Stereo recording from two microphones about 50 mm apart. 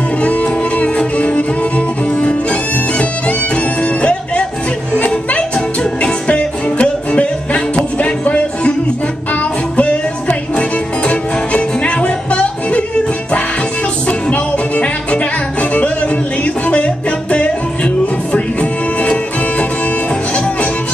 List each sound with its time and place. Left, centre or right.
0.2 s music: left
3.8 s music: left
14.0 s music: left
16.6 s music: left